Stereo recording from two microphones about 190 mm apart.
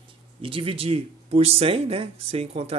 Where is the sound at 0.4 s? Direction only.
30° right (ahead or behind).